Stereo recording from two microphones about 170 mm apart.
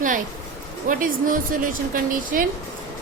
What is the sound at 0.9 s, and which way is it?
Speech, 55° right (ahead or behind).